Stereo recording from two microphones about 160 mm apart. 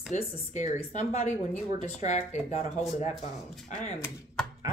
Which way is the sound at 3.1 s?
Centre (ahead or behind).